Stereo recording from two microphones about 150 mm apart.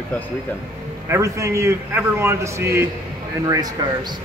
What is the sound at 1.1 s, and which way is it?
Speech, 20° right (ahead or behind).